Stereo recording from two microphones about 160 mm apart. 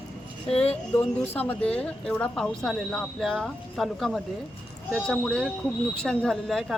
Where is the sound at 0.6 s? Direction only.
40° left (ahead or behind).